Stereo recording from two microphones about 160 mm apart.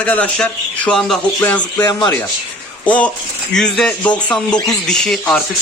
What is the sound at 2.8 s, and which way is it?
Speech, 10° left (ahead or behind).